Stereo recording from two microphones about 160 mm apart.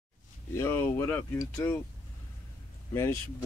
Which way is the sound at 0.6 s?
15° left (ahead or behind).